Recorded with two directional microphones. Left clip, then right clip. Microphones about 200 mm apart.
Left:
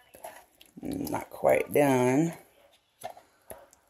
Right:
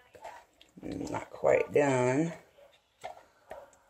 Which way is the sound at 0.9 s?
55° left (ahead or behind).